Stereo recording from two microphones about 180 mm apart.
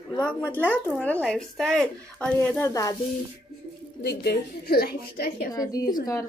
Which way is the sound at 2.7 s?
20° left (ahead or behind).